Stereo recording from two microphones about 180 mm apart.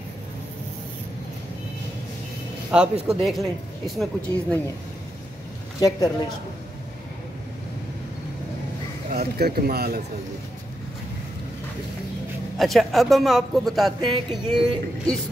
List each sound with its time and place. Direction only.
2.7 s speech: 5° right (ahead or behind)
5.8 s speech: 20° left (ahead or behind)
9.1 s speech: 60° right (ahead or behind)
12.5 s speech: centre (ahead or behind)